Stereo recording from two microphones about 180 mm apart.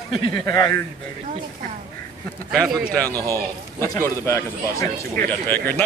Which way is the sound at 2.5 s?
Centre (ahead or behind).